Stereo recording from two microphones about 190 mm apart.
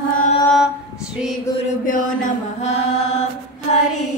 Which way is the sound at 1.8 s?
45° left (ahead or behind).